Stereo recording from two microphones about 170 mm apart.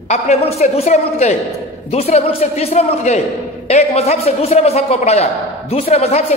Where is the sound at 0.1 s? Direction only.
40° left (ahead or behind).